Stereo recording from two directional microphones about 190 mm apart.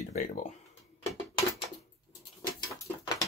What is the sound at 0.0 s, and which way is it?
Speech, 40° left (ahead or behind).